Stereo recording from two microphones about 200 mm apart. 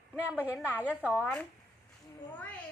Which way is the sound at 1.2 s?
5° left (ahead or behind).